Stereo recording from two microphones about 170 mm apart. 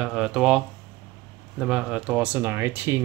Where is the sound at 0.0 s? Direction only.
5° right (ahead or behind).